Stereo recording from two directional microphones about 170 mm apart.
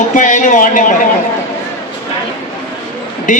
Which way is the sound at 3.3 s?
50° left (ahead or behind).